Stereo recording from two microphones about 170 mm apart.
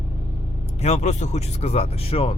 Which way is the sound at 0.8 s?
40° left (ahead or behind).